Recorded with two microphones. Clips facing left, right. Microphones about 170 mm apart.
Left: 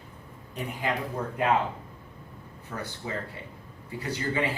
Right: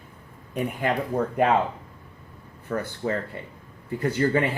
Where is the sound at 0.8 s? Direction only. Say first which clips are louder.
Right 4 dB; 55° right (ahead or behind).